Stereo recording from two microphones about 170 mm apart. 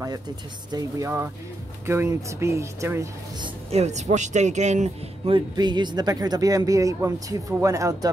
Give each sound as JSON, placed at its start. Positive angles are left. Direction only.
{"t": 0.7, "sound": "speech", "side_deg": -20}
{"t": 3.4, "sound": "speech", "side_deg": -40}